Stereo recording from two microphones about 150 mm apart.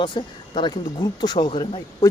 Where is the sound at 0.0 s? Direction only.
30° left (ahead or behind).